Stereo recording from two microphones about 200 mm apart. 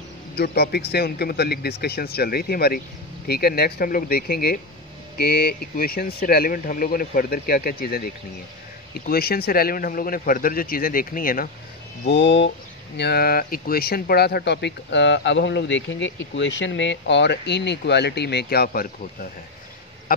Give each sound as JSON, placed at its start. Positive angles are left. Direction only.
{"t": 0.4, "sound": "speech", "side_deg": 55}
{"t": 12.1, "sound": "speech", "side_deg": 60}
{"t": 20.1, "sound": "speech", "side_deg": 45}